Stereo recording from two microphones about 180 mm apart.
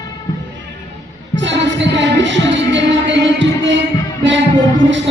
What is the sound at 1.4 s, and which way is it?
Music, 85° right.